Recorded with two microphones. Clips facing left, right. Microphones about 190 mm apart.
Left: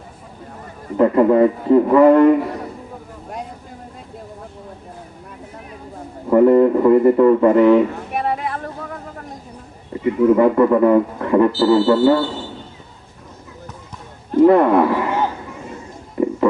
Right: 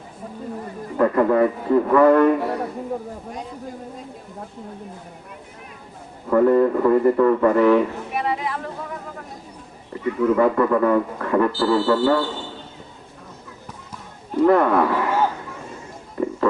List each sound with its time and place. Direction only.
0.9 s speech: 20° left (ahead or behind)
6.3 s a man's voice: 20° left (ahead or behind)
8.1 s a sound: 50° left (ahead or behind)
10.0 s speech: 25° left (ahead or behind)
14.3 s roaring cats: 20° left (ahead or behind)
16.2 s music: 20° left (ahead or behind)